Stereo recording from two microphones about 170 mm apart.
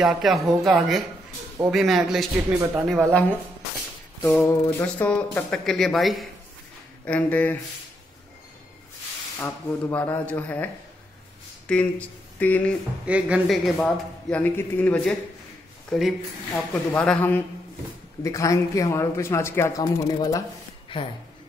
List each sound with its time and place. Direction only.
0.0 s speech: centre (ahead or behind)
4.2 s speech: 15° left (ahead or behind)
9.4 s speech: 10° left (ahead or behind)
13.0 s speech: 5° right (ahead or behind)
13.7 s speech: 10° left (ahead or behind)